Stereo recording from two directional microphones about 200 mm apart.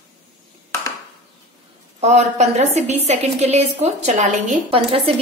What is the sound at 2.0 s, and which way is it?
A man's voice, 35° right (ahead or behind).